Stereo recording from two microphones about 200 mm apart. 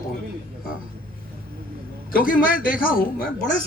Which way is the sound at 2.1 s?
45° left (ahead or behind).